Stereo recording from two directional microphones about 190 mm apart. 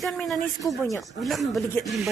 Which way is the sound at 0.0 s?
Centre (ahead or behind).